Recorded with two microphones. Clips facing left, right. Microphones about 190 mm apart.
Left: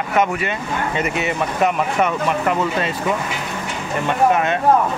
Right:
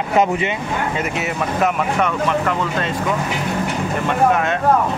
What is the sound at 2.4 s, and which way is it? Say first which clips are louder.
Speech: left 1 dB; 10° left (ahead or behind).